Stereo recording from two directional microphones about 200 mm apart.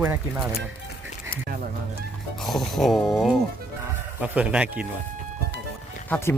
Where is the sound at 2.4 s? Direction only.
Centre (ahead or behind).